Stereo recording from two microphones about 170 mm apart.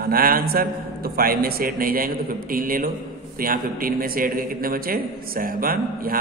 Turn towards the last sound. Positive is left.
turn(degrees=-55)  # may be behind; listen again after turning